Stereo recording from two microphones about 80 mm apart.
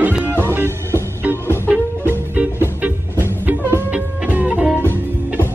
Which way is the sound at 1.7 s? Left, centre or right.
Centre.